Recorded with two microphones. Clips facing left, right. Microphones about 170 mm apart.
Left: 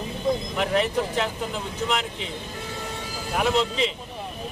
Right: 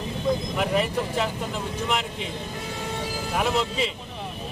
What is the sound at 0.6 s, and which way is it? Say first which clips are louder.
Speech: left 1 dB; 5° right (ahead or behind).